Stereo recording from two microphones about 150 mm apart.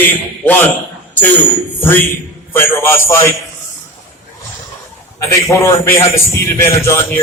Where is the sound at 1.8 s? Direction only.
15° left (ahead or behind).